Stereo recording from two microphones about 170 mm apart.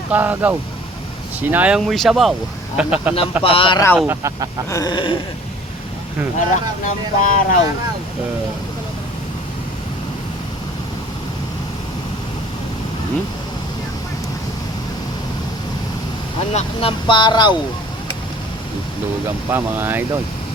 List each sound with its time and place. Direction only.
0.1 s speech: 10° right (ahead or behind)
3.4 s speech: 30° left (ahead or behind)
3.9 s speech: 10° right (ahead or behind)
4.7 s speech: 25° left (ahead or behind)
6.8 s speech: 50° left (ahead or behind)
16.5 s speech: 35° left (ahead or behind)
19.5 s speech: 10° right (ahead or behind)